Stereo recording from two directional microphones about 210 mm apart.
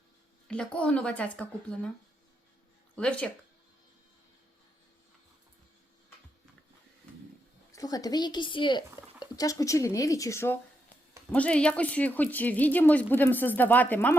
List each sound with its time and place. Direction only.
0.4 s speech: 5° left (ahead or behind)
2.9 s speech: 5° left (ahead or behind)
7.7 s speech: 15° left (ahead or behind)